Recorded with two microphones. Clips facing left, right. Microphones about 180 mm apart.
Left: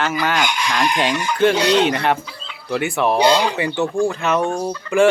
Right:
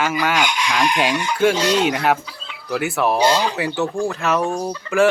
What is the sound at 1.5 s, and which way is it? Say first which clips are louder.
Speech: left 2 dB; 65° left (ahead or behind).